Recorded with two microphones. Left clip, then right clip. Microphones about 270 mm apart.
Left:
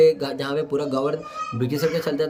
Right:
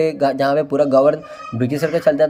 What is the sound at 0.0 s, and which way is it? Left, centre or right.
Speech, centre.